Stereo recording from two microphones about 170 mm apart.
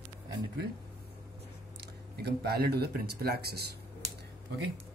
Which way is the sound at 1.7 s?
70° right (ahead or behind).